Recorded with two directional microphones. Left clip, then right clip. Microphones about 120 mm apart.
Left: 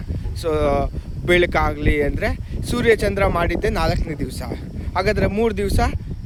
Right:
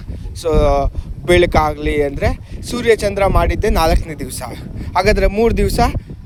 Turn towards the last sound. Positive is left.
turn(degrees=-65)  # may be behind; listen again after turning